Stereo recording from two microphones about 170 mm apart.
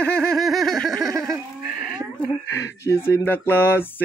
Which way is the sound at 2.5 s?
15° left (ahead or behind).